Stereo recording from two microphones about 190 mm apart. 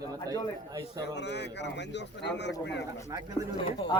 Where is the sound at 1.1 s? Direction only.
65° left (ahead or behind).